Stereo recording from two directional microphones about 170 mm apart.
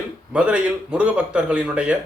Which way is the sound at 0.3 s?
5° right (ahead or behind).